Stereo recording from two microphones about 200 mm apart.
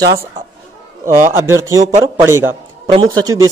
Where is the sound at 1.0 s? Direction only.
15° right (ahead or behind).